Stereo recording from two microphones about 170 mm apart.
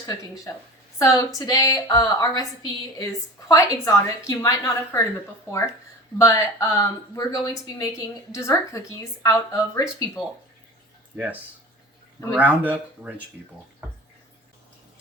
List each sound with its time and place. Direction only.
0.0 s a woman's voice: 20° left (ahead or behind)
12.3 s speech: 10° right (ahead or behind)